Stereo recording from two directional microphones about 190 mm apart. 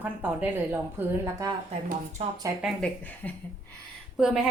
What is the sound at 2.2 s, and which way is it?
Speech, 35° right (ahead or behind).